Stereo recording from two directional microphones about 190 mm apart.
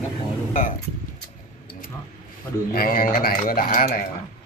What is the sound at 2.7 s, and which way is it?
Speech, 50° left (ahead or behind).